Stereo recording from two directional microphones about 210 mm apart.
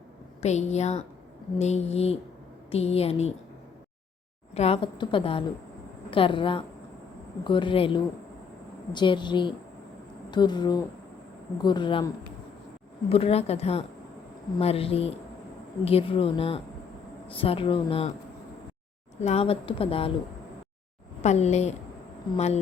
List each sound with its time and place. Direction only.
0.4 s a woman's voice: 30° left (ahead or behind)
4.5 s a woman's voice: 30° left (ahead or behind)
19.2 s a woman's voice: 30° left (ahead or behind)
21.2 s a woman's voice: 30° left (ahead or behind)